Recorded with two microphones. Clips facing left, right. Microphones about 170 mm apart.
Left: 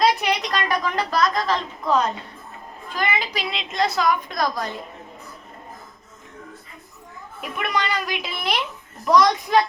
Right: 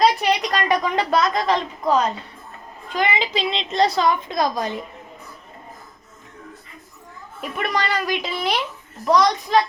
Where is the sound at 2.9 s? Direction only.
20° right (ahead or behind).